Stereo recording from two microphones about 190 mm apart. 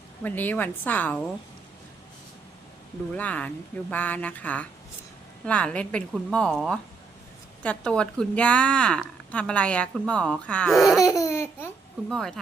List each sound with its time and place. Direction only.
0.2 s speech: 10° left (ahead or behind)
3.2 s speech: 10° left (ahead or behind)
11.0 s laughter: 15° left (ahead or behind)
12.0 s speech: centre (ahead or behind)